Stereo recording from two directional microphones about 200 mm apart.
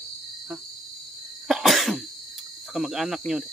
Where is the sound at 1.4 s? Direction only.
Centre (ahead or behind).